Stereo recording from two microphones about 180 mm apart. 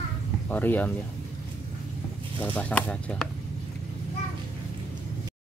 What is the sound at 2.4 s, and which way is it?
Speech, 10° left (ahead or behind).